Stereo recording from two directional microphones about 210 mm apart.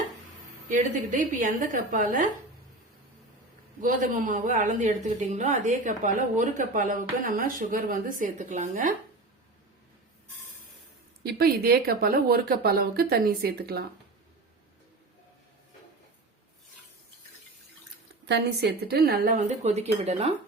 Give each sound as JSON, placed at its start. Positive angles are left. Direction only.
{"t": 0.7, "sound": "a woman's voice", "side_deg": -40}
{"t": 3.8, "sound": "a woman's voice", "side_deg": -40}
{"t": 11.3, "sound": "a woman's voice", "side_deg": -45}
{"t": 18.3, "sound": "a woman's voice", "side_deg": -50}